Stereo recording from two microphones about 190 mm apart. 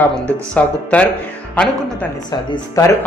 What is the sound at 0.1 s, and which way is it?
Speech, 5° left (ahead or behind).